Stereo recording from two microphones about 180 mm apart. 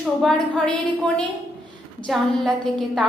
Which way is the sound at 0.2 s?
5° left (ahead or behind).